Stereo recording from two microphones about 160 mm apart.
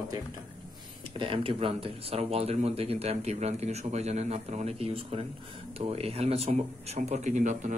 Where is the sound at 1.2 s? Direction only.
35° right (ahead or behind).